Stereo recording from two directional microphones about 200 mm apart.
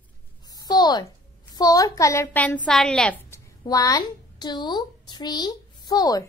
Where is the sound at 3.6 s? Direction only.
20° left (ahead or behind).